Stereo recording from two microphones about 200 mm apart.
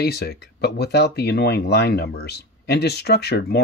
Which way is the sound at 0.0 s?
50° left (ahead or behind).